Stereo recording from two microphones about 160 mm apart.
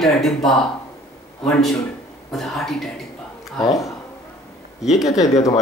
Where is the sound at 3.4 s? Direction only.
Centre (ahead or behind).